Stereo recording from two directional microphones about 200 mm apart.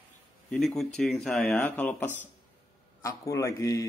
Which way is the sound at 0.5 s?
Centre (ahead or behind).